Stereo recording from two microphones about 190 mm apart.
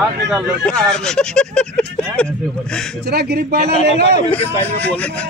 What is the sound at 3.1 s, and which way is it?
Speech, 55° right (ahead or behind).